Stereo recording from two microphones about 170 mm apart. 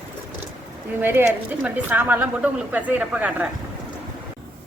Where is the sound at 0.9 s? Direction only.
10° right (ahead or behind).